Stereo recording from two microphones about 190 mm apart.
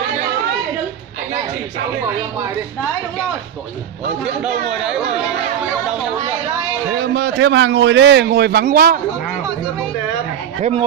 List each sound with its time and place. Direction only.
4.2 s a man's voice: 5° right (ahead or behind)
7.0 s a man's voice: 55° right (ahead or behind)